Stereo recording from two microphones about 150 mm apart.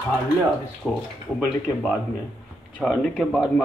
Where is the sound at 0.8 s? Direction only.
5° right (ahead or behind).